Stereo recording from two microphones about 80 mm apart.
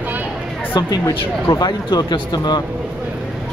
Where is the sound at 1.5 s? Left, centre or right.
Left.